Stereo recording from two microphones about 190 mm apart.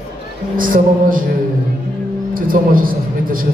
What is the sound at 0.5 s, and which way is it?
Speech, 45° right (ahead or behind).